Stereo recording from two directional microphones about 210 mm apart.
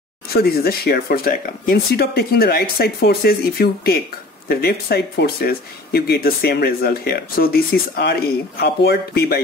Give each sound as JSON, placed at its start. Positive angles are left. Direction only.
{"t": 0.3, "sound": "speech", "side_deg": 45}